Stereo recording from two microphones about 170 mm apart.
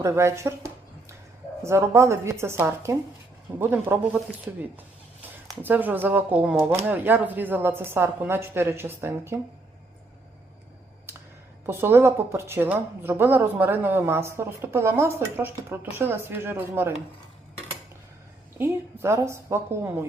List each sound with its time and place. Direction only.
0.0 s a woman's voice: 15° right (ahead or behind)
5.6 s a woman's voice: 10° right (ahead or behind)
11.6 s a woman's voice: 15° right (ahead or behind)
18.5 s a woman's voice: 15° right (ahead or behind)